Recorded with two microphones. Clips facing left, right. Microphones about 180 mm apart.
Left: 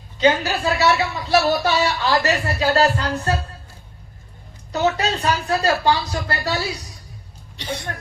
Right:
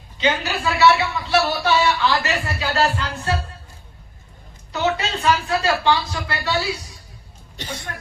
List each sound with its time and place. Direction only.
0.2 s speech: 40° left (ahead or behind)
4.7 s speech: 40° left (ahead or behind)
7.9 s speech: 45° left (ahead or behind)